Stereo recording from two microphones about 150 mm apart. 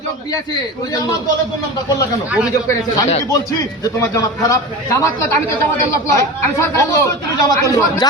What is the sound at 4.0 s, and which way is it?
A man's voice, 20° left (ahead or behind).